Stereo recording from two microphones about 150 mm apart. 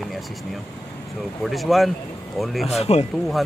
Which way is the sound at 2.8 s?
45° left (ahead or behind).